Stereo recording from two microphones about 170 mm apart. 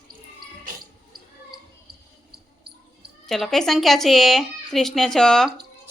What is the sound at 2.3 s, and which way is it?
Basketball bounce, 70° right (ahead or behind).